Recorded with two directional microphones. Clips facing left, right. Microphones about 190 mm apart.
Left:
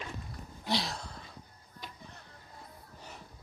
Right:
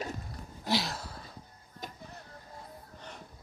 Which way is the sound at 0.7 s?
Centre (ahead or behind).